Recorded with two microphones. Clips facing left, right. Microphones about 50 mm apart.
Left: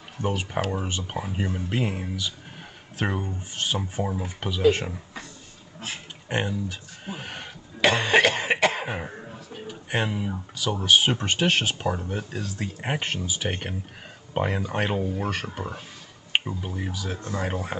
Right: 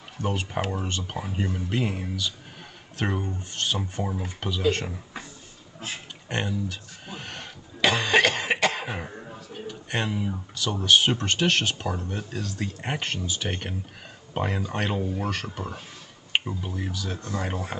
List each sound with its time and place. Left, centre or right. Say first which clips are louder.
0.7 s speech: left 1 dB; centre
6.2 s throat clearing: left 2 dB; centre
9.7 s speech: left 2 dB; centre